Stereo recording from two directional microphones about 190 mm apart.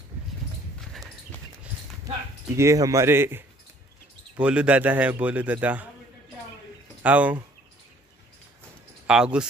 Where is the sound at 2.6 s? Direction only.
15° right (ahead or behind).